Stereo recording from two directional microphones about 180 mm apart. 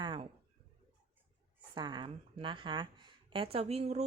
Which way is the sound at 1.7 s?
25° right (ahead or behind).